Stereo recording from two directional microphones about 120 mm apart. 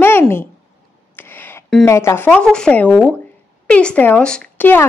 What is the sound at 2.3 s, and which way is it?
A woman's voice, 5° left (ahead or behind).